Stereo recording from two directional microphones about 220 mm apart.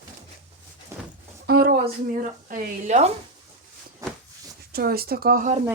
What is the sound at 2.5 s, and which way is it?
Speech, 30° right (ahead or behind).